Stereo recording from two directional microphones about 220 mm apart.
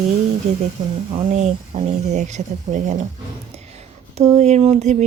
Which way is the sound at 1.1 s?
30° right (ahead or behind).